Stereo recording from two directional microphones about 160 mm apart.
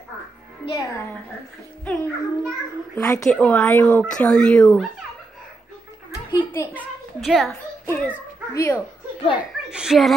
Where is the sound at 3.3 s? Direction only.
5° left (ahead or behind).